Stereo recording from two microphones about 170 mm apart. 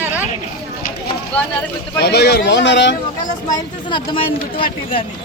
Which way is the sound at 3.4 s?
25° left (ahead or behind).